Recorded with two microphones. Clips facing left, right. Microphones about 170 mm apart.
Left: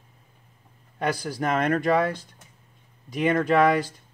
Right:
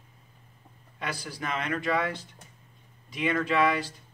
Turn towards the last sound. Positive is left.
turn(degrees=45)  # may be behind; listen again after turning